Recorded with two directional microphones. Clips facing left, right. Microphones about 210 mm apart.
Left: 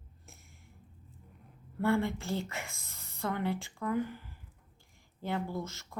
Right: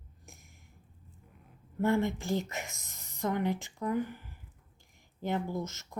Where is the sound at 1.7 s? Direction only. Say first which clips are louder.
Right 1 dB; 20° right (ahead or behind).